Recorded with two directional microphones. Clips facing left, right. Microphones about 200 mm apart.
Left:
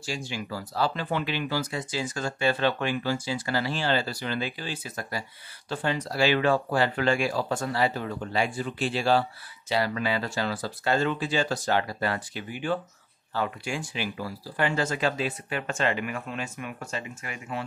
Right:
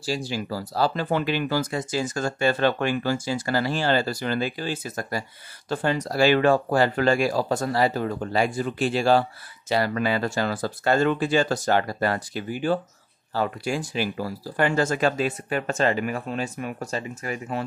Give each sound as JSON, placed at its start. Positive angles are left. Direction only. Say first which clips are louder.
{"t": 0.0, "sound": "speech", "louder": "right 6 dB", "side_deg": -35}